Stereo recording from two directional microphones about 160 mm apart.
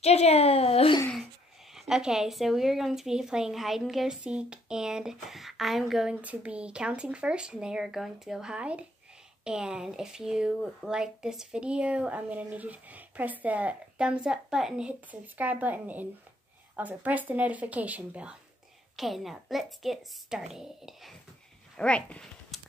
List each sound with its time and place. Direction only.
0.0 s a child's voice: 40° left (ahead or behind)
1.7 s a woman's voice: 5° right (ahead or behind)